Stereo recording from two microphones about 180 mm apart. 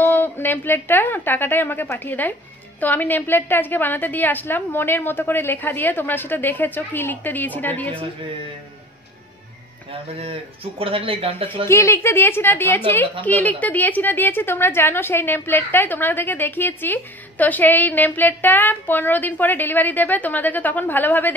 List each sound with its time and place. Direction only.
0.0 s a woman's voice: 10° left (ahead or behind)
10.1 s speech: 30° right (ahead or behind)
11.6 s a woman's voice: 15° left (ahead or behind)